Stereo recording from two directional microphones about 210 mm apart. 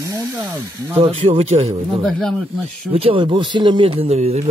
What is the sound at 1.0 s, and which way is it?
Speech, 30° right (ahead or behind).